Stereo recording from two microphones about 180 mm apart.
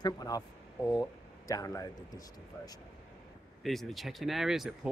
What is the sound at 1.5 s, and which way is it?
Speech, 20° left (ahead or behind).